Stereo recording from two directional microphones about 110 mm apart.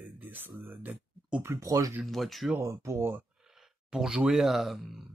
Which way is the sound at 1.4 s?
25° right (ahead or behind).